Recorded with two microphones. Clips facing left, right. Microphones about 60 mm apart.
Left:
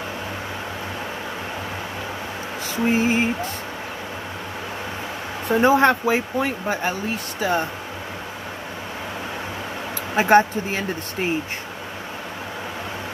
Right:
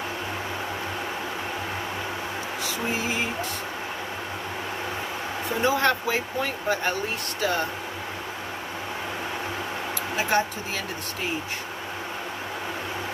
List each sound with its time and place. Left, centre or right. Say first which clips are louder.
2.6 s a sound: left 9 dB; left
5.6 s speech: left 8 dB; left
5.9 s speech: left 5 dB; left
10.1 s speech: left 9 dB; left